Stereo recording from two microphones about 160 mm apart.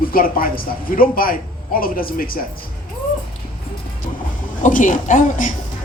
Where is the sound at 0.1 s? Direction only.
65° left (ahead or behind).